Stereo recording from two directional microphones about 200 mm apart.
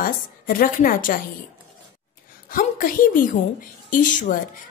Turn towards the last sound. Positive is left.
turn(degrees=40)  # may be behind; listen again after turning